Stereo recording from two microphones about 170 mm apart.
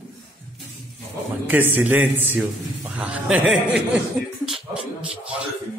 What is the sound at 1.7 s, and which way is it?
A man's voice, 10° right (ahead or behind).